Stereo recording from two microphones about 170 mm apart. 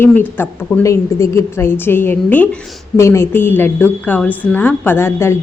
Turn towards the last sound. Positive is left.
turn(degrees=15)  # may be behind; listen again after turning